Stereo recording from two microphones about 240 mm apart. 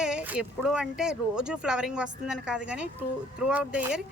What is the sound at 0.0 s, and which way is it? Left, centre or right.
A woman's voice, centre.